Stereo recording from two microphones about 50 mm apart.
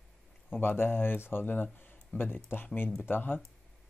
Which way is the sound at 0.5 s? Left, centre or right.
Left.